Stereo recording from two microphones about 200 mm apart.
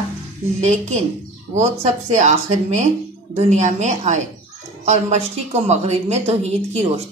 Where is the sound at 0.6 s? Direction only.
35° right (ahead or behind).